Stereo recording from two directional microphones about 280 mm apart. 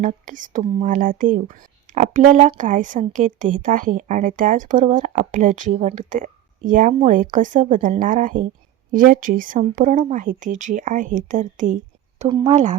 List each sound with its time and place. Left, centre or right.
0.0 s speech: right